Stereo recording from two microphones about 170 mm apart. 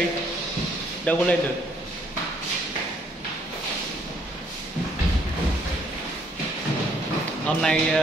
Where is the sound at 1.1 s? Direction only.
5° left (ahead or behind).